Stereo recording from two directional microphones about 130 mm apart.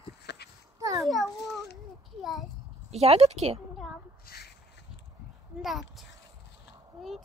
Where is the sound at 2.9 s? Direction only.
55° right (ahead or behind).